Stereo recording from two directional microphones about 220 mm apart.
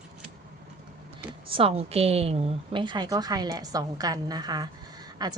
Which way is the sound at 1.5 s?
25° right (ahead or behind).